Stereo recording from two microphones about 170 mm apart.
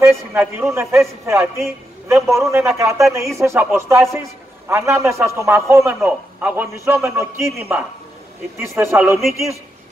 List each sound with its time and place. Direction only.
0.0 s a man's voice: 15° right (ahead or behind)
8.5 s a man's voice: 15° right (ahead or behind)